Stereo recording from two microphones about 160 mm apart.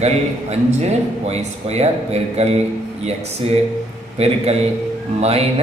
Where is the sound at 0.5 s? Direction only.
45° right (ahead or behind).